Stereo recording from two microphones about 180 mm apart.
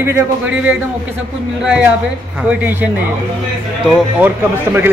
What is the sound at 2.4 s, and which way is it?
Speech, 10° right (ahead or behind).